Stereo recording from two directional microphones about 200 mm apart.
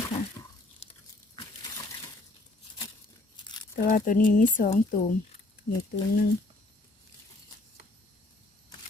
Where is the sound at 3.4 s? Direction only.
20° left (ahead or behind).